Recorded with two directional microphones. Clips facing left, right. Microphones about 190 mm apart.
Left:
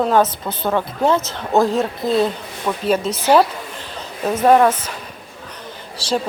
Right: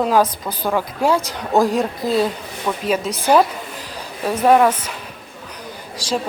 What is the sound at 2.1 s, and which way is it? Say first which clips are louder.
A woman's voice: left 2 dB; centre (ahead or behind).